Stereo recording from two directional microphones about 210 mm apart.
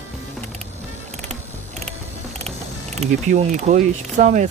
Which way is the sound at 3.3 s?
35° right (ahead or behind).